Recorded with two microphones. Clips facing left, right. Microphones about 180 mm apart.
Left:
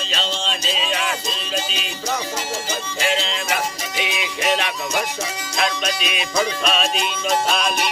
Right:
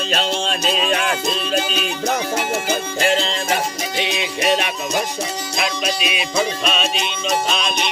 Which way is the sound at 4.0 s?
30° right (ahead or behind).